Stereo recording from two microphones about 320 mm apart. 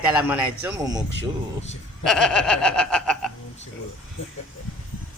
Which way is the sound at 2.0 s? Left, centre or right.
Centre.